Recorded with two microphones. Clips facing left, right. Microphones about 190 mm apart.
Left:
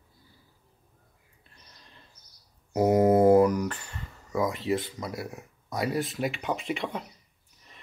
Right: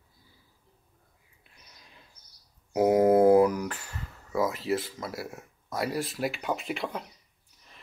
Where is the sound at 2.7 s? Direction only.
5° right (ahead or behind).